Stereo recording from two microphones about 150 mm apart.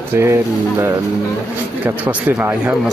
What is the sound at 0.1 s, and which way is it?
Speech, 15° right (ahead or behind).